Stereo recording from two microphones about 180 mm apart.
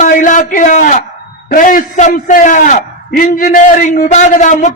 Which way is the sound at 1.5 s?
45° left (ahead or behind).